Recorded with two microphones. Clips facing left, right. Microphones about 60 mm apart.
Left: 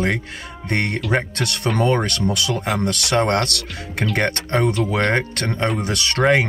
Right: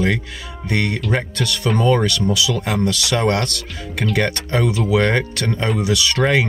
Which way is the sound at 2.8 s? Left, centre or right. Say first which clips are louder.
Right 1 dB; left.